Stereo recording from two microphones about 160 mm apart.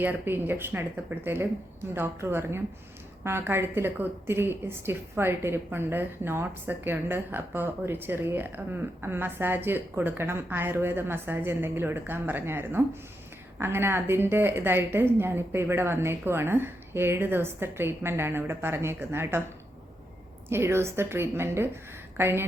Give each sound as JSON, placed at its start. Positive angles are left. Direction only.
{"t": 0.0, "sound": "a woman's voice", "side_deg": -10}
{"t": 20.5, "sound": "a woman's voice", "side_deg": -15}